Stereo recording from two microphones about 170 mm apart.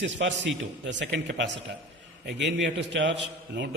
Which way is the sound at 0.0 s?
90° right.